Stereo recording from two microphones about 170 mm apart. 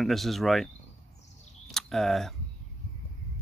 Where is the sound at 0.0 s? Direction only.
Centre (ahead or behind).